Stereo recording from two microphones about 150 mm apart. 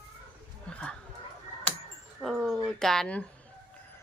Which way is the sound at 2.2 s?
Centre (ahead or behind).